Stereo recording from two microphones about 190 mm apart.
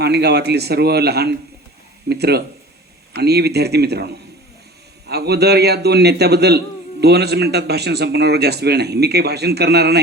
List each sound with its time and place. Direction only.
0.0 s a man's voice: 60° right (ahead or behind)